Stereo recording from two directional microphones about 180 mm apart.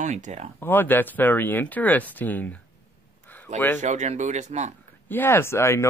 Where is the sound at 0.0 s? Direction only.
40° right (ahead or behind).